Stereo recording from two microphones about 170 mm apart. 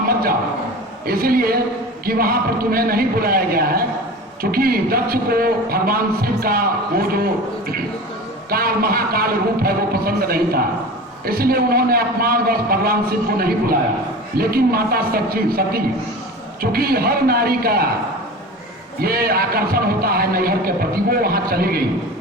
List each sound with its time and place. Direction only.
0.1 s a sound: 60° right (ahead or behind)
1.0 s a man's voice: 60° right (ahead or behind)
8.4 s a man's voice: 60° right (ahead or behind)
18.9 s a man's voice: 60° right (ahead or behind)